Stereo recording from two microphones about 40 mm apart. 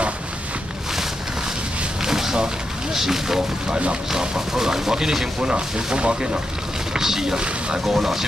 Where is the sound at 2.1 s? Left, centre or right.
Centre.